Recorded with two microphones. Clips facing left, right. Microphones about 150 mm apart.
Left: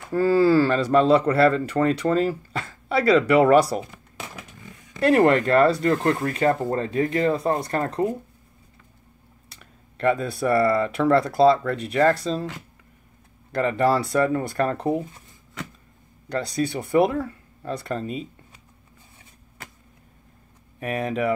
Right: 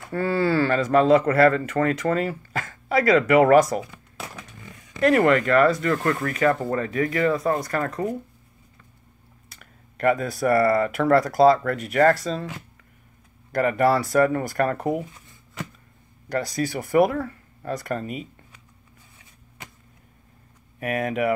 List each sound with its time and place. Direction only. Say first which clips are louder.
0.2 s speech: left 4 dB; 35° left (ahead or behind)
5.0 s speech: left 1 dB; 35° left (ahead or behind)
9.5 s speech: even; 30° left (ahead or behind)
13.5 s speech: right 1 dB; 30° left (ahead or behind)
16.3 s speech: even; 30° left (ahead or behind)
20.8 s speech: right 1 dB; 30° left (ahead or behind)